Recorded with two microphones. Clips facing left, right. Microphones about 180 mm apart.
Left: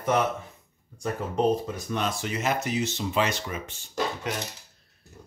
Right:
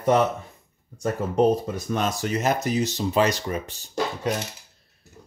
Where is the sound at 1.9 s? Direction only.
40° right (ahead or behind).